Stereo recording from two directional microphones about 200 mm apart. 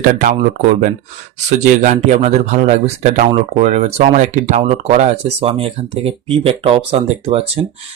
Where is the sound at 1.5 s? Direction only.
35° right (ahead or behind).